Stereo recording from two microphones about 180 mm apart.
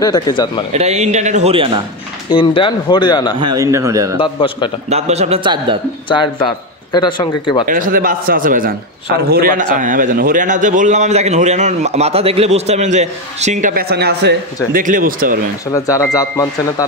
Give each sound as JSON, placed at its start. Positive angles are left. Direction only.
{"t": 0.0, "sound": "a man's voice", "side_deg": 20}
{"t": 0.7, "sound": "a man's voice", "side_deg": -35}
{"t": 2.2, "sound": "a man's voice", "side_deg": 25}
{"t": 3.3, "sound": "a man's voice", "side_deg": -20}
{"t": 4.2, "sound": "a man's voice", "side_deg": 25}
{"t": 4.8, "sound": "a man's voice", "side_deg": -35}
{"t": 6.0, "sound": "a man's voice", "side_deg": 25}
{"t": 7.6, "sound": "a man's voice", "side_deg": -50}
{"t": 14.7, "sound": "a man's voice", "side_deg": -50}
{"t": 15.7, "sound": "speech", "side_deg": 15}